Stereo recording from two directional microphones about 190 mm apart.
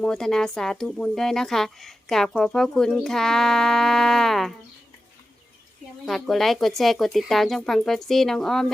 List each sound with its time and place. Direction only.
0.0 s speech: 5° left (ahead or behind)
6.1 s speech: centre (ahead or behind)